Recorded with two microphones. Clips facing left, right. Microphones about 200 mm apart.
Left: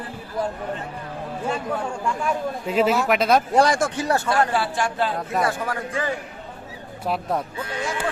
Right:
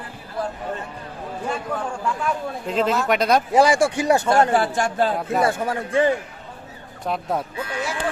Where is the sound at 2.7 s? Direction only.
10° left (ahead or behind); by 4.3 s 15° right (ahead or behind).